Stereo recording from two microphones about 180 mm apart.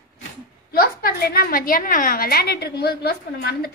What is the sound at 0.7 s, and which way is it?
A woman's voice, 55° left (ahead or behind).